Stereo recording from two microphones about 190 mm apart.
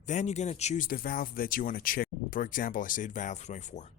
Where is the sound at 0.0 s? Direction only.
40° left (ahead or behind).